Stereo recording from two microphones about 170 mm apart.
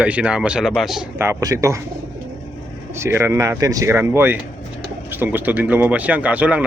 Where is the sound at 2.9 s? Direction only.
15° right (ahead or behind).